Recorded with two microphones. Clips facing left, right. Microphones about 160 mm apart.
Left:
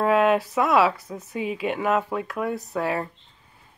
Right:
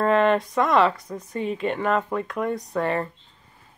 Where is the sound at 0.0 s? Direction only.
5° left (ahead or behind).